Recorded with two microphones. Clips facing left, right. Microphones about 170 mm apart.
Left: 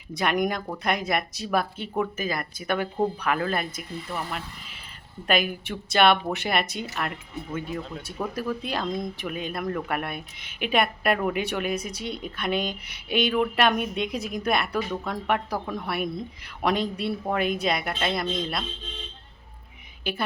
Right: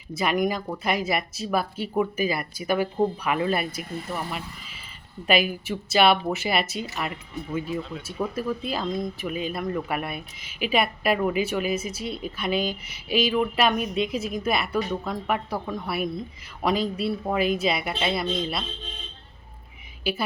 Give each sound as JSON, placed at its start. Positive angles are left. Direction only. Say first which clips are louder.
{"t": 0.1, "sound": "speech", "louder": "right 1 dB", "side_deg": -5}